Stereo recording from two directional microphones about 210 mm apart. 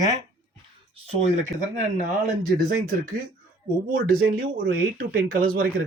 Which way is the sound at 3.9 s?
45° right (ahead or behind).